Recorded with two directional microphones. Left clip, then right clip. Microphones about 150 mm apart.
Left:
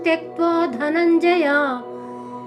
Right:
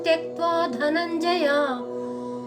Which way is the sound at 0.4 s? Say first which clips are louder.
Left 4 dB; 20° left (ahead or behind).